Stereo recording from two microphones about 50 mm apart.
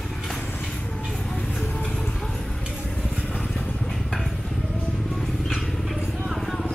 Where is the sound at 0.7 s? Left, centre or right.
Left.